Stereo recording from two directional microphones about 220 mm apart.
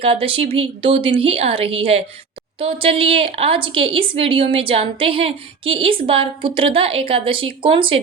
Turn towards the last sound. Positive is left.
turn(degrees=-25)  # may be behind; listen again after turning